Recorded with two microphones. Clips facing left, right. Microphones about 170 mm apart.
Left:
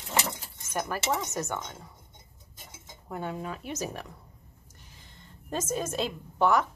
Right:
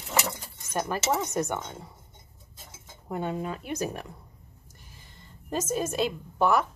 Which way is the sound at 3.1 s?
20° right (ahead or behind).